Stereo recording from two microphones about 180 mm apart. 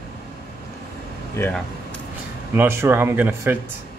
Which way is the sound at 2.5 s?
15° right (ahead or behind).